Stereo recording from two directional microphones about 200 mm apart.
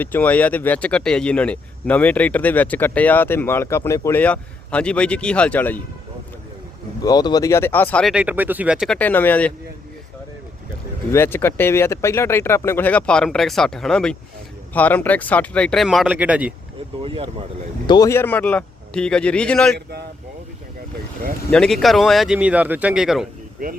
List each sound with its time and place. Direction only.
0.0 s speech: 10° left (ahead or behind)
7.0 s speech: 20° left (ahead or behind); by 9.0 s 5° right (ahead or behind)
9.0 s speech: 10° left (ahead or behind)
11.1 s speech: 10° left (ahead or behind); by 16.6 s 5° right (ahead or behind)
17.0 s speech: 25° right (ahead or behind)
17.8 s speech: 20° left (ahead or behind)
21.5 s speech: centre (ahead or behind)